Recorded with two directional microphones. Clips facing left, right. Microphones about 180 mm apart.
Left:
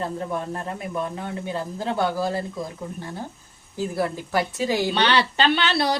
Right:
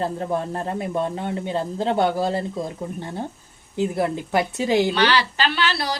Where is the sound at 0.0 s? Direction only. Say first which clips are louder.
Right 3 dB; 35° right (ahead or behind).